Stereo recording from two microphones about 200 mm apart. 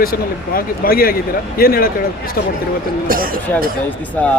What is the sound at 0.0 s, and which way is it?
Speech, 45° left (ahead or behind).